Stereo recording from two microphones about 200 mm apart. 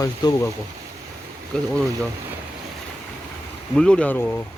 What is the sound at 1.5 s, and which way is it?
Speech, 5° left (ahead or behind).